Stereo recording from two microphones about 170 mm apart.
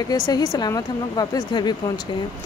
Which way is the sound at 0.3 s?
20° left (ahead or behind).